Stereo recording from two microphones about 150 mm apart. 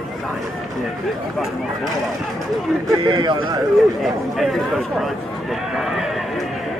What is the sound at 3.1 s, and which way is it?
Speech, 30° right (ahead or behind).